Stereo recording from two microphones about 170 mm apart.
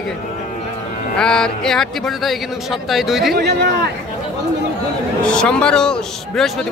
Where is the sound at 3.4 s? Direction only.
75° right (ahead or behind).